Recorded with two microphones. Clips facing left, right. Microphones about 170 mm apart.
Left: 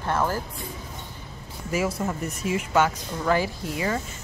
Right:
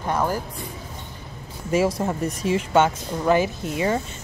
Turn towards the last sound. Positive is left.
turn(degrees=-25)  # may be behind; listen again after turning